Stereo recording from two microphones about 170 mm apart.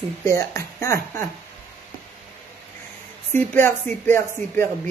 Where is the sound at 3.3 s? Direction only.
15° left (ahead or behind).